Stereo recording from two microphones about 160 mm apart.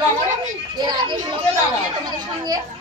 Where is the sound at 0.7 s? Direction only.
25° right (ahead or behind).